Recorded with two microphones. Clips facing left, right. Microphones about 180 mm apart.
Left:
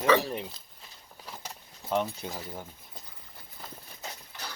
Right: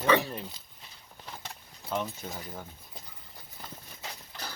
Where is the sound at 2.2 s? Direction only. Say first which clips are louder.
Left 2 dB; 20° left (ahead or behind).